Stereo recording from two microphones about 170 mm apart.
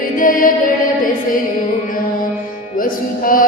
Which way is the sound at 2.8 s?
55° left (ahead or behind).